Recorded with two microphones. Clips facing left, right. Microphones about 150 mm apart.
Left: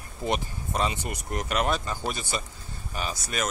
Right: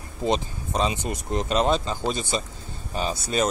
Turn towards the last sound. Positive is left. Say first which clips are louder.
# right 6 dB
turn(degrees=-30)  # may be behind; listen again after turning